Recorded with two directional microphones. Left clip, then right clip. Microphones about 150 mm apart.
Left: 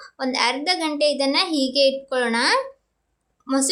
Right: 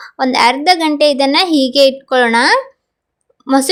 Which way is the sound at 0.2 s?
50° right (ahead or behind).